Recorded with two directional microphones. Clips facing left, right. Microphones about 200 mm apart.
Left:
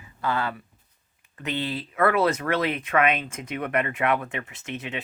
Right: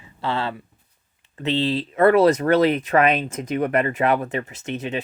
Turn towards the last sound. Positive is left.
turn(degrees=-35)  # may be behind; listen again after turning